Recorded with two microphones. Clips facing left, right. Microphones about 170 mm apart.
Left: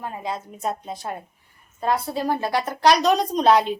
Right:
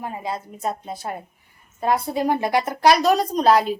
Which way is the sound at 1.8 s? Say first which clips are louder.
Right 2 dB; 15° right (ahead or behind).